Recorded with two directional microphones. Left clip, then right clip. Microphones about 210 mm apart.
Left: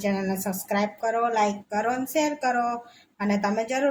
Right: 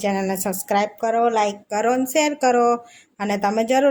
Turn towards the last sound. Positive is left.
turn(degrees=-40)  # may be behind; listen again after turning